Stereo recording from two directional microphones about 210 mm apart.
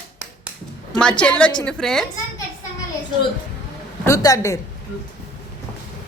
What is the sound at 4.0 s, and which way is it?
Speech, 15° left (ahead or behind).